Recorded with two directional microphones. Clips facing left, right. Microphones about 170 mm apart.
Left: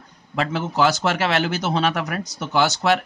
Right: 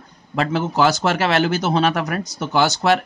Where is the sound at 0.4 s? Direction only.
45° right (ahead or behind).